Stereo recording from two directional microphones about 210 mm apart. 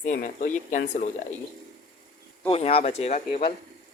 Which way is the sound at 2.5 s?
25° left (ahead or behind).